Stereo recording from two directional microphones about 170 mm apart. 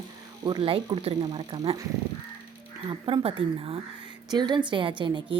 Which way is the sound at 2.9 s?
30° right (ahead or behind).